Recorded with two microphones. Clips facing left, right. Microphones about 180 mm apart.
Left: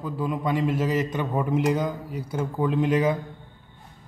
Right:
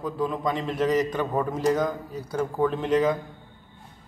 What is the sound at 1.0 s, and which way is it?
Speech, 20° left (ahead or behind).